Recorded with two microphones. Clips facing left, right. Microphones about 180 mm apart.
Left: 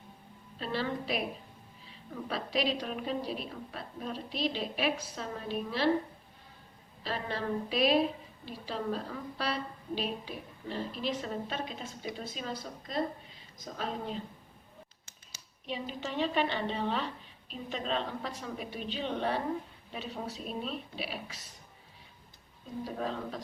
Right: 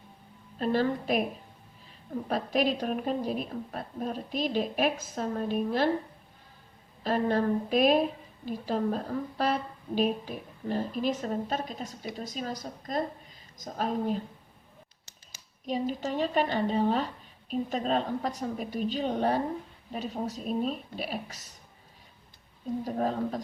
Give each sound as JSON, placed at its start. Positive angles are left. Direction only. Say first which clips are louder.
{"t": 0.6, "sound": "a woman's voice", "louder": "right 7 dB", "side_deg": -45}
{"t": 7.0, "sound": "a woman's voice", "louder": "right 9 dB", "side_deg": -50}
{"t": 15.6, "sound": "a woman's voice", "louder": "right 7 dB", "side_deg": -45}
{"t": 22.8, "sound": "a woman's voice", "louder": "right 5 dB", "side_deg": -45}